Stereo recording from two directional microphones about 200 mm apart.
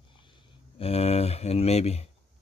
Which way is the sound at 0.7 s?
30° left (ahead or behind).